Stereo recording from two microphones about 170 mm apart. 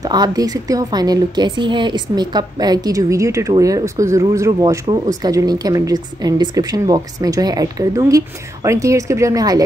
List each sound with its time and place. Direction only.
0.0 s a woman's voice: 25° right (ahead or behind)